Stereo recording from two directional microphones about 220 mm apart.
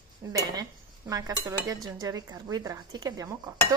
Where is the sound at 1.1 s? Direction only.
15° right (ahead or behind).